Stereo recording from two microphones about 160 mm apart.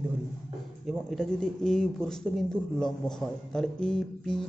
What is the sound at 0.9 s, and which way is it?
Speech, centre (ahead or behind).